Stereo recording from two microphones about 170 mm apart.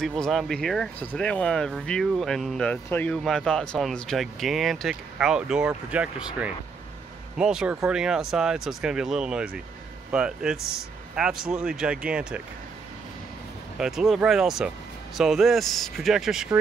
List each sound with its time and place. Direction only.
0.0 s speech: centre (ahead or behind)
10.6 s speech: 65° right (ahead or behind)
11.1 s speech: 5° right (ahead or behind)
13.7 s speech: 5° right (ahead or behind)